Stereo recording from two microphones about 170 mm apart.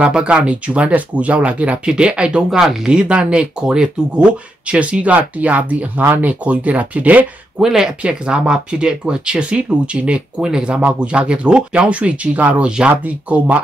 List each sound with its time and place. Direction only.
0.0 s speech: 5° right (ahead or behind)